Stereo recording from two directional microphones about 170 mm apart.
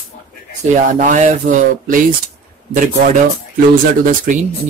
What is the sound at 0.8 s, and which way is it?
Speech, 50° right (ahead or behind).